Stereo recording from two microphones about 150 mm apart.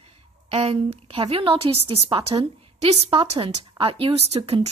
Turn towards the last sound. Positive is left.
turn(degrees=-40)  # may be behind; listen again after turning